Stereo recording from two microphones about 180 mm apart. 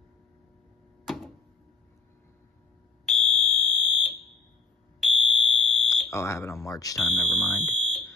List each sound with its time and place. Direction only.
1.0 s a sound: centre (ahead or behind)
3.1 s fire alarm: centre (ahead or behind)
6.0 s speech: 15° left (ahead or behind)
7.0 s speech: centre (ahead or behind)